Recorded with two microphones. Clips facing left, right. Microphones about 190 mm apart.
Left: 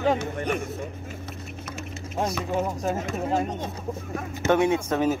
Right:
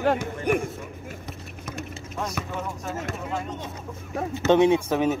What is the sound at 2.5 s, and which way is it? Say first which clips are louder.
Speech: left 6 dB; 35° left (ahead or behind).